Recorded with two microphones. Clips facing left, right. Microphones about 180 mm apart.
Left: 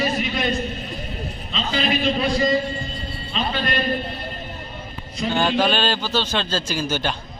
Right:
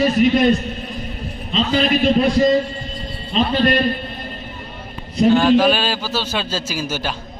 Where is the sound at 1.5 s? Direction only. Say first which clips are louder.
Right 6 dB; 50° right (ahead or behind).